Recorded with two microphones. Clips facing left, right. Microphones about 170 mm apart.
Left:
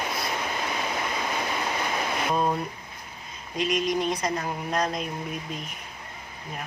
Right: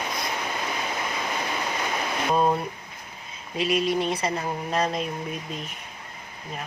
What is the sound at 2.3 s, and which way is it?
Speech, 30° right (ahead or behind).